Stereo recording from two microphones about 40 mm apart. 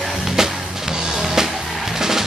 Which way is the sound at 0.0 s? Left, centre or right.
Centre.